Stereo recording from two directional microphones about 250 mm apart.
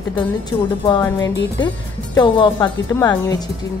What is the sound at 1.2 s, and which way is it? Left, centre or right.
Music, left.